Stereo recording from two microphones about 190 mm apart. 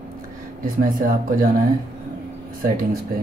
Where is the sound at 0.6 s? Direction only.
45° right (ahead or behind).